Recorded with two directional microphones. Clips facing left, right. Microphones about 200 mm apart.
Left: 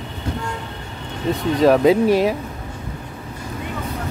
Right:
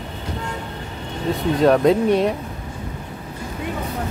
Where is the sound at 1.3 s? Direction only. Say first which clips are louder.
Left 1 dB; centre (ahead or behind).